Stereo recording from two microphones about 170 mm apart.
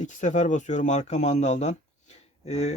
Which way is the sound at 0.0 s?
45° left (ahead or behind).